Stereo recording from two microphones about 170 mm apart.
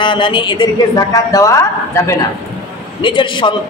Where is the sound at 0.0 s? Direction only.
30° left (ahead or behind).